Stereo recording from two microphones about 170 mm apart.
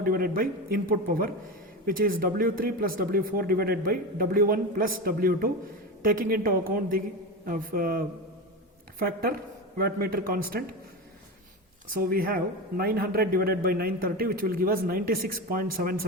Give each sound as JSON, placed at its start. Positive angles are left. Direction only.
{"t": 0.0, "sound": "a man's voice", "side_deg": -60}
{"t": 11.9, "sound": "a man's voice", "side_deg": -60}